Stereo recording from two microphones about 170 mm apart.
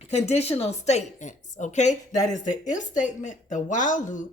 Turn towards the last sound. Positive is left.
turn(degrees=50)  # may be behind; listen again after turning